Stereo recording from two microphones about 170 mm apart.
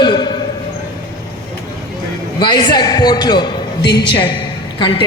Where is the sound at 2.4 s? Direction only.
25° left (ahead or behind).